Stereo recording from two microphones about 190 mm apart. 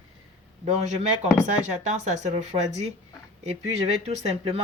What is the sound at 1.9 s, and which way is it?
Speech, 35° right (ahead or behind).